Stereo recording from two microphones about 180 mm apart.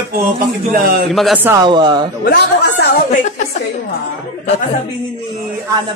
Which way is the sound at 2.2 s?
65° left (ahead or behind).